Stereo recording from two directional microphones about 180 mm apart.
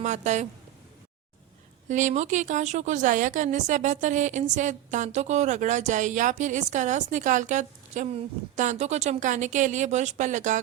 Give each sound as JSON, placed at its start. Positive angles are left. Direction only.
{"t": 0.0, "sound": "a woman's voice", "side_deg": -40}
{"t": 1.9, "sound": "a woman's voice", "side_deg": -40}